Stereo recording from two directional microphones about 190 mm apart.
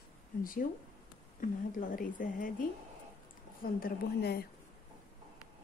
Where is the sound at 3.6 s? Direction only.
55° left (ahead or behind).